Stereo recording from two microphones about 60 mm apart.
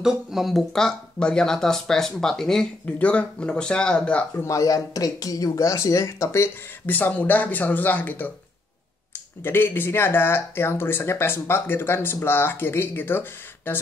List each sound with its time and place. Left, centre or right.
0.0 s speech: centre
3.0 s speech: left
4.5 s speech: left
6.9 s speech: left
9.4 s speech: left